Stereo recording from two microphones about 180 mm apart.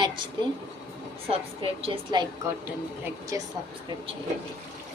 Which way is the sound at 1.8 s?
25° right (ahead or behind).